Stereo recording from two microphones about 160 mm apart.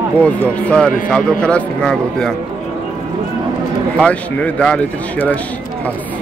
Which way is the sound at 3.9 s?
5° left (ahead or behind).